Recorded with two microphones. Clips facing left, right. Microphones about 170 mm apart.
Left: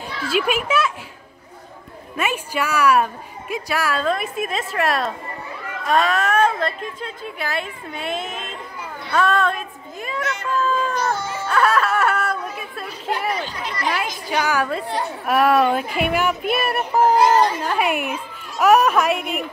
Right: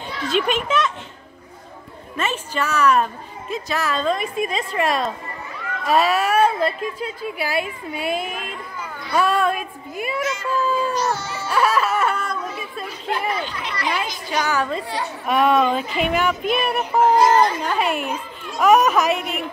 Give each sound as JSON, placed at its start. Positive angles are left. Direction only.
{"t": 0.2, "sound": "a child's voice", "side_deg": 5}
{"t": 2.1, "sound": "a woman's voice", "side_deg": 10}
{"t": 10.5, "sound": "a sound", "side_deg": -10}
{"t": 11.0, "sound": "music", "side_deg": 50}
{"t": 11.4, "sound": "speech", "side_deg": -5}
{"t": 13.5, "sound": "speech", "side_deg": 40}
{"t": 13.9, "sound": "a woman's voice", "side_deg": 10}